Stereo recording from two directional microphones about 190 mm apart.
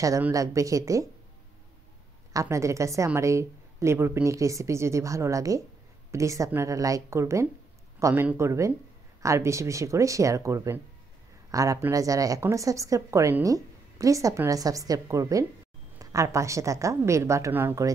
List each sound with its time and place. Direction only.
0.0 s a woman's voice: 15° right (ahead or behind)
2.3 s a woman's voice: 15° right (ahead or behind)